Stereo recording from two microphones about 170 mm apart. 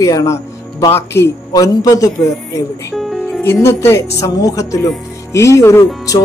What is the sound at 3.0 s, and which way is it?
Music, centre (ahead or behind).